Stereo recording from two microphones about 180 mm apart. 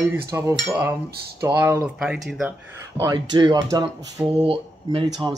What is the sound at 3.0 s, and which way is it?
Speech, 25° right (ahead or behind).